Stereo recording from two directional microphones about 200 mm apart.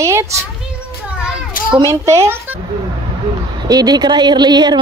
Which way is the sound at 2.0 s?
15° right (ahead or behind).